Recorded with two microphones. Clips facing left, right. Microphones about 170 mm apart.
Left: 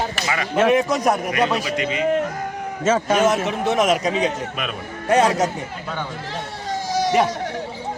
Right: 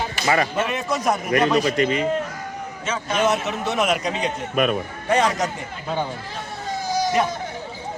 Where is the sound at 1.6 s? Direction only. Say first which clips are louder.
Right 3 dB; 45° right (ahead or behind).